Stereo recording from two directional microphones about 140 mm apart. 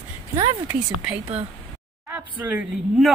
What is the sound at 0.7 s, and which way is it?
A woman's voice, 5° right (ahead or behind).